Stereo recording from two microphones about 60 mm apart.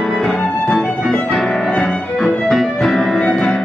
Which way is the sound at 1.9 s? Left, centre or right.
Centre.